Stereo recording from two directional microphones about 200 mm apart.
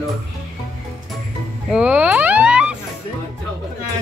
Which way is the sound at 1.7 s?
5° right (ahead or behind).